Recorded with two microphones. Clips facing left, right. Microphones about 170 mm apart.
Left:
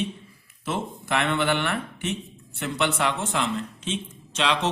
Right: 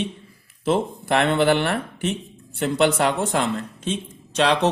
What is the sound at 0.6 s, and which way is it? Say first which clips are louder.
Speech: right 8 dB; 35° right (ahead or behind).